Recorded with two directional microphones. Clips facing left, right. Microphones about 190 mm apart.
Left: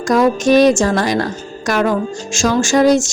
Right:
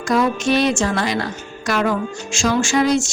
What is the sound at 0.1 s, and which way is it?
Speech, 40° left (ahead or behind).